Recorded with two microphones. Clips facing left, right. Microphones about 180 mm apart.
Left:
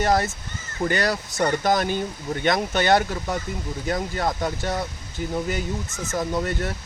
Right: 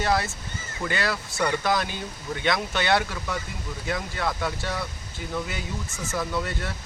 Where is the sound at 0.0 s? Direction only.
45° left (ahead or behind).